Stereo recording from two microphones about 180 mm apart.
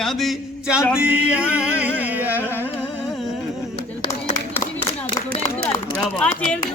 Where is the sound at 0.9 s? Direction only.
5° right (ahead or behind).